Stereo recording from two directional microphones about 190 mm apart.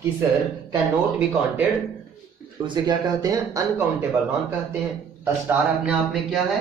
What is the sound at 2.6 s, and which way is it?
Speech, 25° right (ahead or behind).